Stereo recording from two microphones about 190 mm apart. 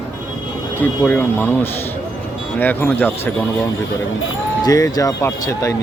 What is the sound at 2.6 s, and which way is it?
Speech, 10° left (ahead or behind).